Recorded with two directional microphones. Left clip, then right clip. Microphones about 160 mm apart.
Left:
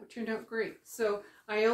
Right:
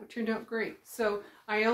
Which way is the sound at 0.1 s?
25° right (ahead or behind).